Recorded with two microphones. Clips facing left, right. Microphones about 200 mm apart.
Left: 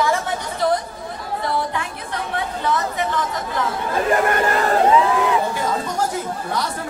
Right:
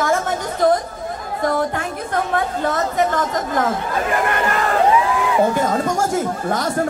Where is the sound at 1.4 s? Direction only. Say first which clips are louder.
Right 5 dB; 45° right (ahead or behind).